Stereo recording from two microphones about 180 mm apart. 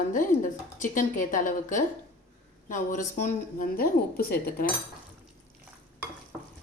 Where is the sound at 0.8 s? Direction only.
45° left (ahead or behind).